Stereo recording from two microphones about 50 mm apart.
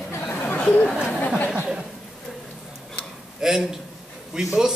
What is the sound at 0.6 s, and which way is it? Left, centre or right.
Speech, left.